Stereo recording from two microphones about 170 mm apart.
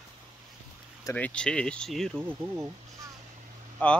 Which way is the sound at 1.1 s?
5° left (ahead or behind).